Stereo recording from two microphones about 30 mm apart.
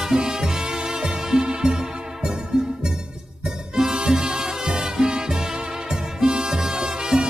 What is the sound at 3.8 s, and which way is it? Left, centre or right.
Music, right.